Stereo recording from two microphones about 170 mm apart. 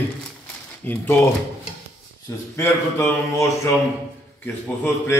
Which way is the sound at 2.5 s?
15° left (ahead or behind).